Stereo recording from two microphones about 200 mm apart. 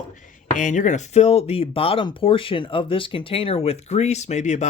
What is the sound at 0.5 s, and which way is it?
Speech, 40° left (ahead or behind).